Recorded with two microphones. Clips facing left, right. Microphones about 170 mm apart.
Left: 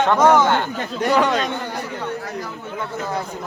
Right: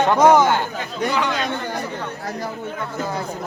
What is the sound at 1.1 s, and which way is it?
Speech, 45° left (ahead or behind).